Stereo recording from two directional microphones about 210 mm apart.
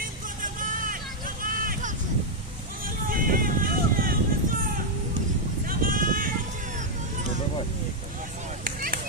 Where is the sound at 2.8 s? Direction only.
40° right (ahead or behind).